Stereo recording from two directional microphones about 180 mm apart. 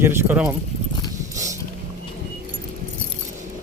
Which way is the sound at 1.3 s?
20° right (ahead or behind).